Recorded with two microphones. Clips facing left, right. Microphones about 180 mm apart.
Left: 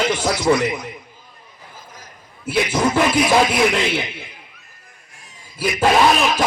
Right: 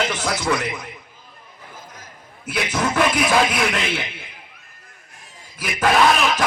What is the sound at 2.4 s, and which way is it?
Music, 25° left (ahead or behind).